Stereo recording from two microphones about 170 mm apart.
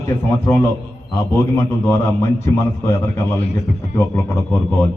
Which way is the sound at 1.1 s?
15° left (ahead or behind).